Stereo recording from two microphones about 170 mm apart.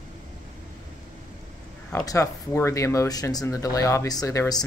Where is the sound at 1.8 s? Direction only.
15° left (ahead or behind).